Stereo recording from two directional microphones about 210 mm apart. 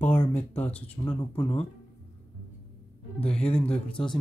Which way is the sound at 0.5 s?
5° left (ahead or behind).